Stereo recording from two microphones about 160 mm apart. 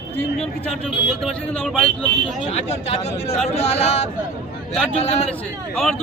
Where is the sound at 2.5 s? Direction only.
45° left (ahead or behind).